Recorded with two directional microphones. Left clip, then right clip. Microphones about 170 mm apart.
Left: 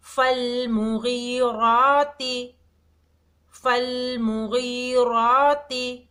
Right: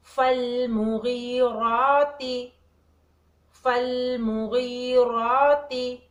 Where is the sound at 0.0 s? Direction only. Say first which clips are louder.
Left 1 dB; 25° left (ahead or behind).